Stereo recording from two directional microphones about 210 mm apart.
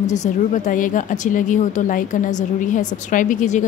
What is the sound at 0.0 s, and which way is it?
A woman's voice, 35° left (ahead or behind).